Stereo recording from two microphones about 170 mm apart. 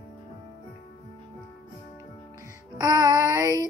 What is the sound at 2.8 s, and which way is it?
Music, 20° right (ahead or behind).